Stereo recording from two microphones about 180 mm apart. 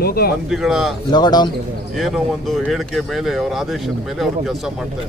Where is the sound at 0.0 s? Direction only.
60° left (ahead or behind).